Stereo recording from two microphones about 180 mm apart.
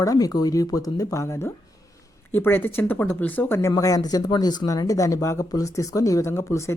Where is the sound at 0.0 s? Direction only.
20° left (ahead or behind).